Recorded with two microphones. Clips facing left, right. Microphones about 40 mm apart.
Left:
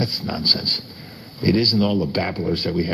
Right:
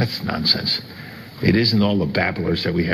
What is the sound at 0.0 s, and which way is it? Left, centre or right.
Speech, right.